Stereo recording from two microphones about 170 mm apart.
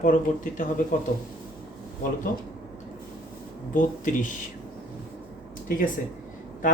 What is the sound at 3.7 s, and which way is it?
Speech, 50° left (ahead or behind).